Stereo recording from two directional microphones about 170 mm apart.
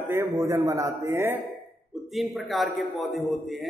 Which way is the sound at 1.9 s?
Centre (ahead or behind).